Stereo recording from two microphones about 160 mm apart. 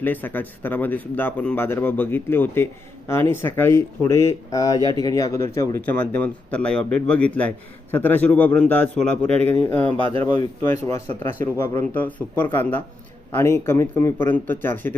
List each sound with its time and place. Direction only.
0.0 s speech: 10° left (ahead or behind)